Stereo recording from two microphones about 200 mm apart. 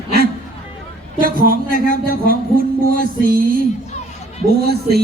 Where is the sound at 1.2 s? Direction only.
45° right (ahead or behind).